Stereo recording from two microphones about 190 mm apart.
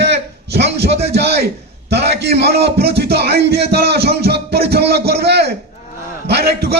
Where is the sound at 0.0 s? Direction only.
65° right (ahead or behind).